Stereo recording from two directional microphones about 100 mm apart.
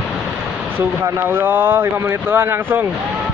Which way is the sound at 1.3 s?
20° right (ahead or behind).